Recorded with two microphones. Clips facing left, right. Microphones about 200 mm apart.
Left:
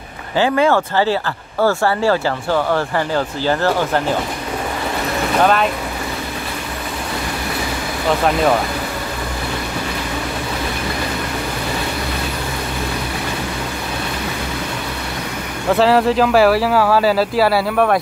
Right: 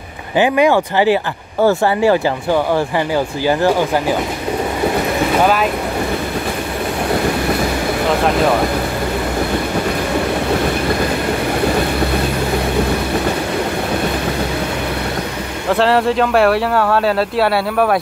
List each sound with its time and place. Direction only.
0.4 s speech: 15° right (ahead or behind)
5.4 s speech: 5° right (ahead or behind)
15.7 s speech: centre (ahead or behind)